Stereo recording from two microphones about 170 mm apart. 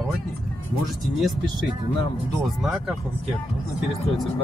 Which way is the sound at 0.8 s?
Centre (ahead or behind).